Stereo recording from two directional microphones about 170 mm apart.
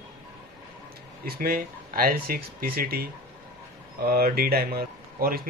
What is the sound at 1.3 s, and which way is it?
Speech, 60° right (ahead or behind).